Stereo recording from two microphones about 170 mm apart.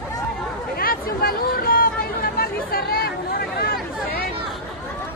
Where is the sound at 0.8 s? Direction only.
60° left (ahead or behind).